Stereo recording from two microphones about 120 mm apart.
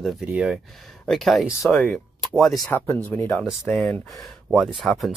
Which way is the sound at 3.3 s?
5° left (ahead or behind).